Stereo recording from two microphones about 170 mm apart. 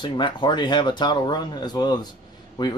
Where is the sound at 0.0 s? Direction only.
25° left (ahead or behind).